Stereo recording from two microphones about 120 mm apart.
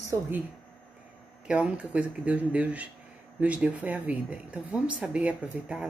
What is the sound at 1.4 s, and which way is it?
Speech, 10° right (ahead or behind).